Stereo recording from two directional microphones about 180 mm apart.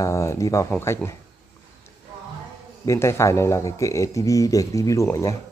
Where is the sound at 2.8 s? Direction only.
15° left (ahead or behind).